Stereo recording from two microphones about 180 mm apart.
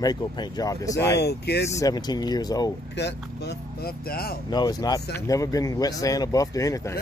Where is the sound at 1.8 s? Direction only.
20° left (ahead or behind).